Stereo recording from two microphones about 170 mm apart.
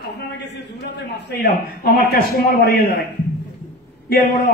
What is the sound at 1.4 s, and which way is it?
A man's voice, 60° left (ahead or behind).